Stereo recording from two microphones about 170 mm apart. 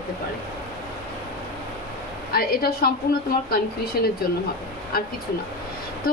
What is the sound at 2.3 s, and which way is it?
Speech, 65° left (ahead or behind).